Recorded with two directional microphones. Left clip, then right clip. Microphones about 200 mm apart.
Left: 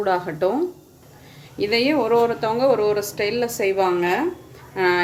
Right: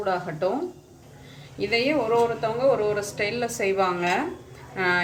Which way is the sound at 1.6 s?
45° left (ahead or behind).